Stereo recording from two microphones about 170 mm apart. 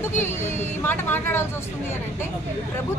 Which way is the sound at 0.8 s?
15° left (ahead or behind).